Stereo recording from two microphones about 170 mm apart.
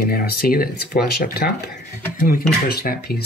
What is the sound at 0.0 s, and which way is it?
Speech, 65° left (ahead or behind).